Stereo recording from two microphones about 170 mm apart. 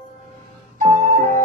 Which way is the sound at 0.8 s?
55° right (ahead or behind).